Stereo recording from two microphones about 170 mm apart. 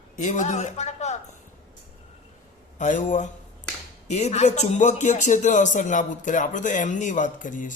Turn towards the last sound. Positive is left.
turn(degrees=50)  # may be behind; listen again after turning